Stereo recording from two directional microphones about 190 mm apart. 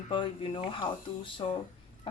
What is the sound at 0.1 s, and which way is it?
Speech, 25° left (ahead or behind).